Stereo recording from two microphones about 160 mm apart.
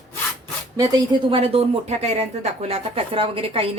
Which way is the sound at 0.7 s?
25° right (ahead or behind).